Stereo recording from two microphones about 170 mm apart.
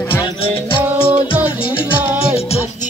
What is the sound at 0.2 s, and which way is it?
Music, 30° left (ahead or behind).